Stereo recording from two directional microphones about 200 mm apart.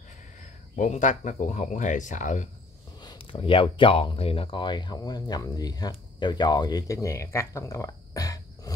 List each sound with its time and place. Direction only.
0.4 s speech: 40° left (ahead or behind)
3.0 s speech: 25° left (ahead or behind)